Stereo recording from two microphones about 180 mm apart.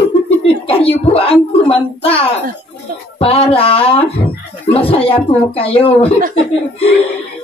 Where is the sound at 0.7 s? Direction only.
30° left (ahead or behind).